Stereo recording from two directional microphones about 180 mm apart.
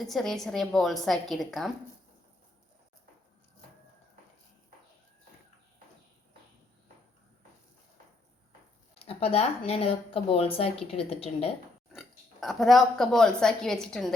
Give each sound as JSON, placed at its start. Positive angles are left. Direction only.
{"t": 0.1, "sound": "a woman's voice", "side_deg": 0}
{"t": 9.0, "sound": "speech", "side_deg": 35}
{"t": 11.9, "sound": "speech", "side_deg": 0}